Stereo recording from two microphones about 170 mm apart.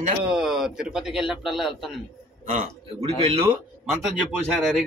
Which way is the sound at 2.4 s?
45° right (ahead or behind).